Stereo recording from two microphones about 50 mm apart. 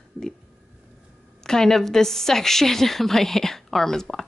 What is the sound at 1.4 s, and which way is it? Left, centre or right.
A woman's voice, centre.